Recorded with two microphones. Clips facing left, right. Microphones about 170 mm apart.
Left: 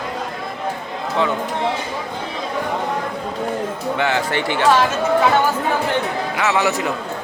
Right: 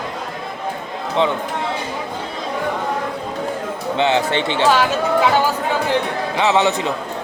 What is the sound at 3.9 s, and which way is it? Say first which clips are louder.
Speech: right 4 dB; 20° right (ahead or behind).